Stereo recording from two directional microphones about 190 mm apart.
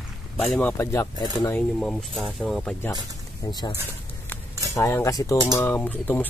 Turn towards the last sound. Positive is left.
turn(degrees=10)  # may be behind; listen again after turning